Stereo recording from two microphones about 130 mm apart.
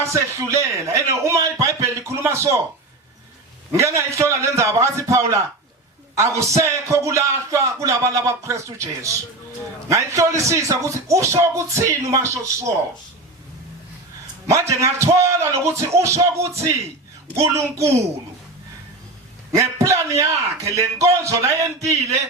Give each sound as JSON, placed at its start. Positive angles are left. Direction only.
{"t": 0.0, "sound": "speech", "side_deg": -25}
{"t": 3.7, "sound": "speech", "side_deg": -25}
{"t": 6.6, "sound": "speech", "side_deg": -25}
{"t": 14.5, "sound": "speech", "side_deg": -25}
{"t": 19.5, "sound": "speech", "side_deg": -20}